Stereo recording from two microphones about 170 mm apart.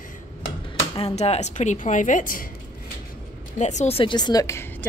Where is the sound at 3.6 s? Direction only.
40° left (ahead or behind); by 4.9 s 15° left (ahead or behind).